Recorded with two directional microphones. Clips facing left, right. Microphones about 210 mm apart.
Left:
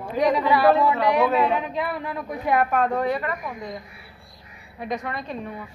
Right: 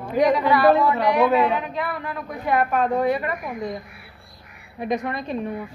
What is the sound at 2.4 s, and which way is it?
Speech, centre (ahead or behind).